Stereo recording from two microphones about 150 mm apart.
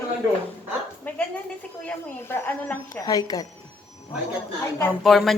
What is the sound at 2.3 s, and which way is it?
Speech, 20° left (ahead or behind).